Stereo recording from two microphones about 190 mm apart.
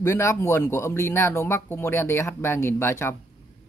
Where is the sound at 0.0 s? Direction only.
15° left (ahead or behind).